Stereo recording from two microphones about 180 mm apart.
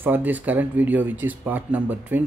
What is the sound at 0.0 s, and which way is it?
Speech, 10° right (ahead or behind).